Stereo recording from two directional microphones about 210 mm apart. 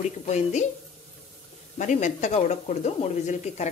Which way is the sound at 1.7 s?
35° left (ahead or behind).